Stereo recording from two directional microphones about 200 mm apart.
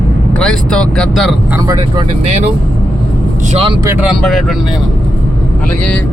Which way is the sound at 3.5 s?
30° right (ahead or behind).